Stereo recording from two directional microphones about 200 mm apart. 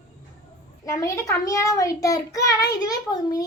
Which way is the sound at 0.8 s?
15° left (ahead or behind).